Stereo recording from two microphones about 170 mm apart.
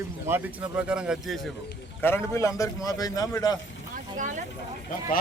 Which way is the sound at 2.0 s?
15° left (ahead or behind).